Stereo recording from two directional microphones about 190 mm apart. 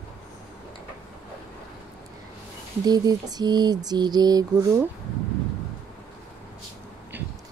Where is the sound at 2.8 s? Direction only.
20° right (ahead or behind).